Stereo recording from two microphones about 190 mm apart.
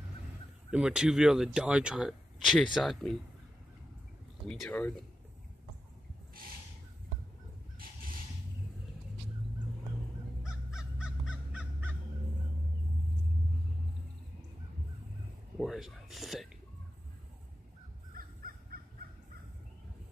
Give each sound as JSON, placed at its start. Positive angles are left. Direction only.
{"t": 0.7, "sound": "speech", "side_deg": -5}
{"t": 4.5, "sound": "speech", "side_deg": 5}
{"t": 7.8, "sound": "a sound", "side_deg": -50}
{"t": 10.4, "sound": "crow", "side_deg": -5}
{"t": 15.6, "sound": "a sound", "side_deg": 0}
{"t": 18.1, "sound": "crow", "side_deg": -50}